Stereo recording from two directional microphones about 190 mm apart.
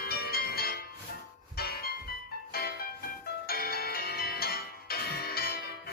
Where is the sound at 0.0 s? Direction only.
55° left (ahead or behind).